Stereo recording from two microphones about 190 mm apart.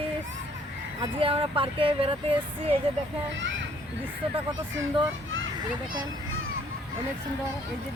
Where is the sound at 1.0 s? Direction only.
30° right (ahead or behind).